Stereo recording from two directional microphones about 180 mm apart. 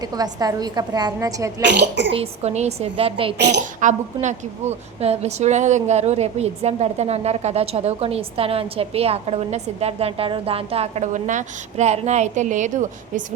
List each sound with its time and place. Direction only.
0.2 s a woman's voice: 20° right (ahead or behind)
1.6 s speech: 75° right (ahead or behind)
2.1 s a woman's voice: 35° right (ahead or behind)
3.3 s speech: 70° right (ahead or behind)
3.8 s a woman's voice: 45° right (ahead or behind)